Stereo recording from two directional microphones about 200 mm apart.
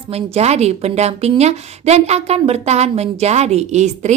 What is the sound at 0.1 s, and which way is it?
A woman's voice, 30° right (ahead or behind).